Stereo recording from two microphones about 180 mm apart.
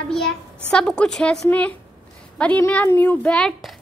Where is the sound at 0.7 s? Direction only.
5° left (ahead or behind).